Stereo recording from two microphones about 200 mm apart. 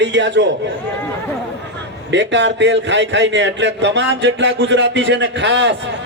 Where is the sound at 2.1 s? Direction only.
60° right (ahead or behind).